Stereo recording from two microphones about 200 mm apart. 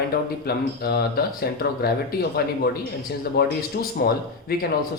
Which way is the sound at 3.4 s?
55° left (ahead or behind).